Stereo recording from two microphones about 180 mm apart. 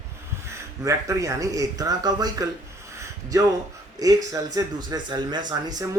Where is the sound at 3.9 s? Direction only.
20° right (ahead or behind).